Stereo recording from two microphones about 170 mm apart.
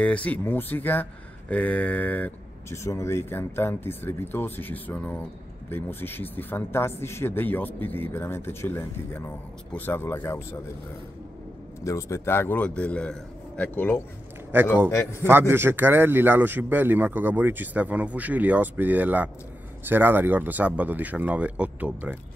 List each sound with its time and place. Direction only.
0.0 s speech: 10° left (ahead or behind)
11.8 s speech: 15° left (ahead or behind)
15.2 s a man's voice: 15° right (ahead or behind)